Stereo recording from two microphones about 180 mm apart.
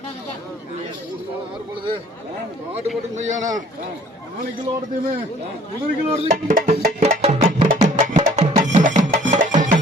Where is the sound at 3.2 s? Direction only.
40° right (ahead or behind).